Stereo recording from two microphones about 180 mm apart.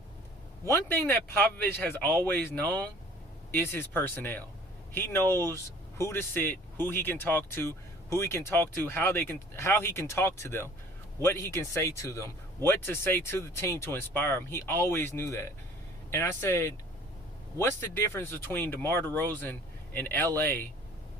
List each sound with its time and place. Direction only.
0.6 s speech: 15° left (ahead or behind)